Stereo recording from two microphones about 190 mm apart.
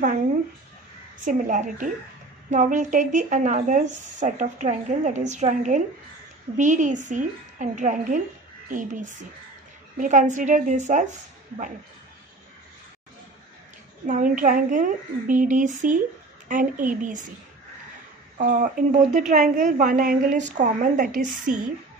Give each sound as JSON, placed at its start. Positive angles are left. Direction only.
{"t": 1.2, "sound": "a woman's voice", "side_deg": -40}
{"t": 14.0, "sound": "speech", "side_deg": -40}
{"t": 18.4, "sound": "speech", "side_deg": -45}